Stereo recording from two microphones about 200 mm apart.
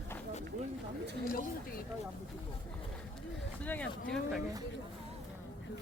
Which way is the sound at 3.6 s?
5° left (ahead or behind).